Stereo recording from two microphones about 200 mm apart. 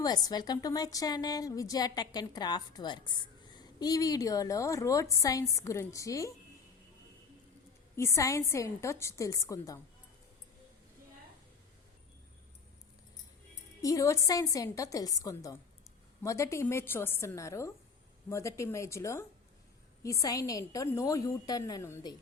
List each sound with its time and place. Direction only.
0.0 s a woman's voice: 20° left (ahead or behind)
7.9 s a woman's voice: 15° left (ahead or behind)
13.8 s a woman's voice: 15° left (ahead or behind)